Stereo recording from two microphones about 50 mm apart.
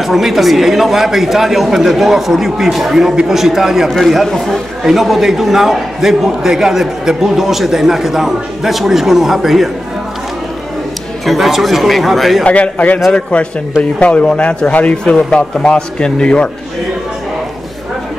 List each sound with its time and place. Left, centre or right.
0.0 s a man's voice: centre
11.2 s speech: centre
12.4 s a man's voice: left